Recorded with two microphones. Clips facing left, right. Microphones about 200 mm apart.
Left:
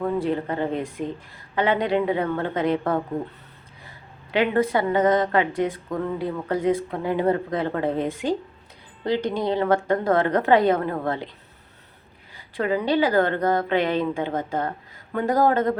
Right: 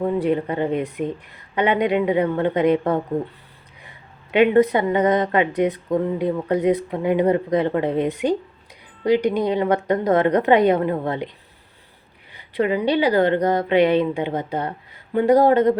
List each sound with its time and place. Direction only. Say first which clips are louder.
0.2 s a woman's voice: right 4 dB; 15° right (ahead or behind)
12.4 s a woman's voice: right 3 dB; 15° right (ahead or behind)